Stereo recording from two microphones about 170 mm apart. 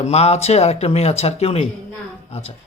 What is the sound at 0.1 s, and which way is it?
Speech, 40° left (ahead or behind).